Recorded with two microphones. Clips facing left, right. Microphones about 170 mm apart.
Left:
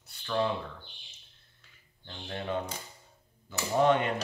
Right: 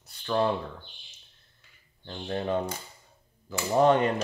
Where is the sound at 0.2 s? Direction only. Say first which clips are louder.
Right 4 dB; 40° right (ahead or behind).